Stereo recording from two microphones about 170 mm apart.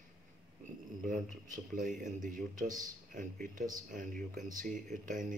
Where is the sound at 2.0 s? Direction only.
50° right (ahead or behind).